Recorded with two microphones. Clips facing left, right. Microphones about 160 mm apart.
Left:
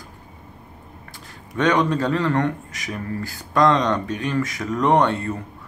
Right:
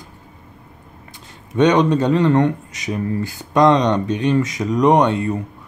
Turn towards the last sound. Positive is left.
turn(degrees=-15)  # may be behind; listen again after turning